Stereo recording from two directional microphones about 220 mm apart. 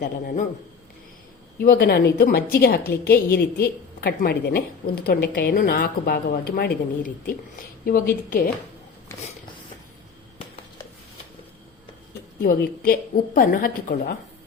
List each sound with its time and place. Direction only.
0.0 s a woman's voice: 40° left (ahead or behind)
1.6 s a woman's voice: 45° left (ahead or behind)
12.4 s a woman's voice: 45° left (ahead or behind)